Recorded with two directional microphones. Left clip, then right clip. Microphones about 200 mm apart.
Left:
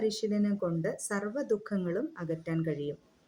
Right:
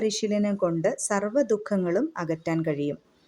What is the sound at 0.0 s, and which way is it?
Speech, 25° right (ahead or behind).